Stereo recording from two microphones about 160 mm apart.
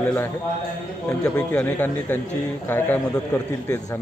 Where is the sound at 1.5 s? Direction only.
10° left (ahead or behind).